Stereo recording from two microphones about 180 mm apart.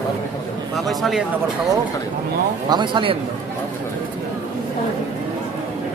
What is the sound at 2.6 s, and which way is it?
Speech, 25° right (ahead or behind).